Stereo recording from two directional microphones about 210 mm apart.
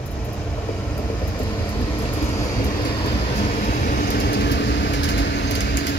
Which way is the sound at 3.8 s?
50° left (ahead or behind).